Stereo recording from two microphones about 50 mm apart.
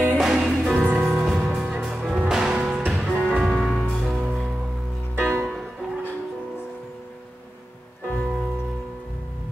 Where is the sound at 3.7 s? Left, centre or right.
Centre.